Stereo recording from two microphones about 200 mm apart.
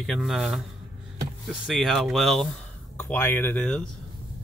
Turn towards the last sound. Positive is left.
turn(degrees=5)  # may be behind; listen again after turning